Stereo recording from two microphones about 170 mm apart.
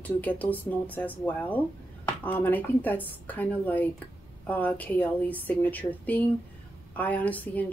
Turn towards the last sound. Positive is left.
turn(degrees=10)  # may be behind; listen again after turning